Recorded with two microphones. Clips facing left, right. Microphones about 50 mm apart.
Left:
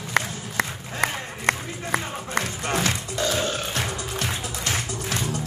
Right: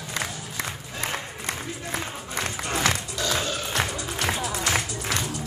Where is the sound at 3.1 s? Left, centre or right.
Left.